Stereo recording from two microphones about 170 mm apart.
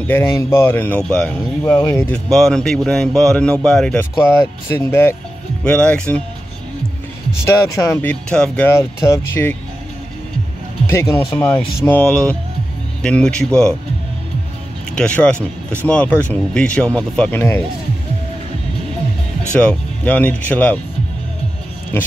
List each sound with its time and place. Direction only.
0.0 s speech: 15° left (ahead or behind)
7.4 s speech: 20° left (ahead or behind)
10.9 s speech: 15° left (ahead or behind)
15.0 s speech: 5° left (ahead or behind)
19.6 s speech: 5° left (ahead or behind)